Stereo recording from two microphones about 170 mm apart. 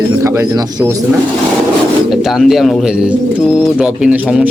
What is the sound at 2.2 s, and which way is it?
Speech, centre (ahead or behind).